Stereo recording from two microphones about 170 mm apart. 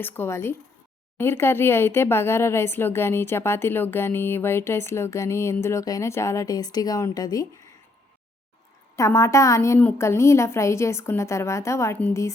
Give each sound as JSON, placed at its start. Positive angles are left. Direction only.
{"t": 0.0, "sound": "speech", "side_deg": 15}
{"t": 9.0, "sound": "speech", "side_deg": 15}